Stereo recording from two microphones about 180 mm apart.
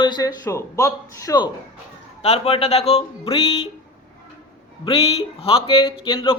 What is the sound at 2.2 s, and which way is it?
Speech, 35° left (ahead or behind).